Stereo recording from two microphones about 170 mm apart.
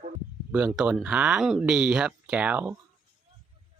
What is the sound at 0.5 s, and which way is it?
Speech, 5° right (ahead or behind).